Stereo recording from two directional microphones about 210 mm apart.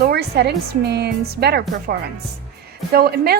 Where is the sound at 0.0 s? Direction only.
50° right (ahead or behind).